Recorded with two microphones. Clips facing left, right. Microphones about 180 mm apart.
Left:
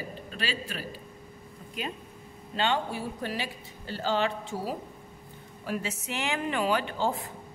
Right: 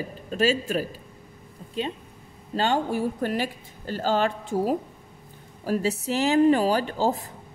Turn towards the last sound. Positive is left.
turn(degrees=-40)  # may be behind; listen again after turning